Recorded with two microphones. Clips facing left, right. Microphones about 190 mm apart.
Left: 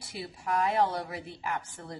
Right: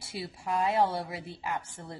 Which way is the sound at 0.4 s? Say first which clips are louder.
Even; 25° right (ahead or behind).